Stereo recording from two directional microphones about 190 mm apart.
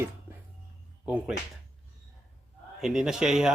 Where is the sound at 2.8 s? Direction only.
Centre (ahead or behind).